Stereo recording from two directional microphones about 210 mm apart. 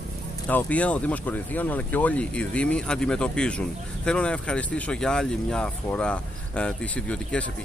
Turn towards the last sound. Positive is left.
turn(degrees=5)  # may be behind; listen again after turning